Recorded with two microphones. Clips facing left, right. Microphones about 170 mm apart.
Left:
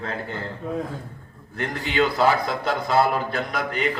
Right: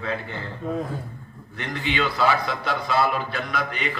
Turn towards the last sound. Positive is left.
turn(degrees=45)  # may be behind; listen again after turning